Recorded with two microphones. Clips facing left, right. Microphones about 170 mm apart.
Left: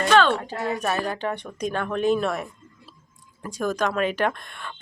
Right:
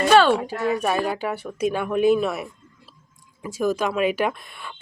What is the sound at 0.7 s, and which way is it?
Speech, 10° right (ahead or behind).